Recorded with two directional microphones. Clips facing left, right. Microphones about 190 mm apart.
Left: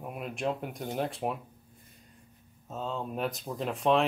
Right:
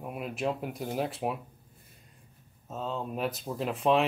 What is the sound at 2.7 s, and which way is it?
Speech, centre (ahead or behind).